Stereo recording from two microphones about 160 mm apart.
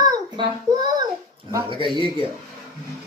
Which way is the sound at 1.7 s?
30° right (ahead or behind).